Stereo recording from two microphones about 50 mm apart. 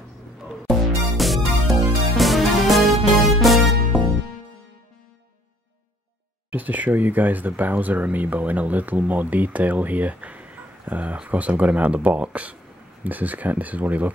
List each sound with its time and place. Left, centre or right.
0.7 s music: centre
6.5 s speech: right